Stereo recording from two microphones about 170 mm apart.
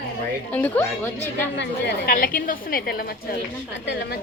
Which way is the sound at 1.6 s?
80° left.